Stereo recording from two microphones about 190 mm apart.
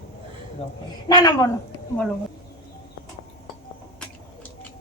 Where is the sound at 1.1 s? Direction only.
20° left (ahead or behind).